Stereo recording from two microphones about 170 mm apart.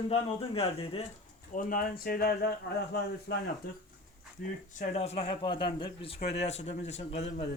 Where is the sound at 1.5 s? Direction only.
55° left (ahead or behind).